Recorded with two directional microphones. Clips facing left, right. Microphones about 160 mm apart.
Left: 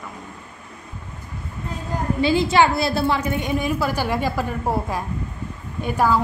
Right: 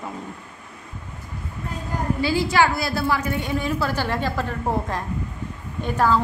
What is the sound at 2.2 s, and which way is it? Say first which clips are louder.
A woman's voice: left 3 dB; 20° left (ahead or behind).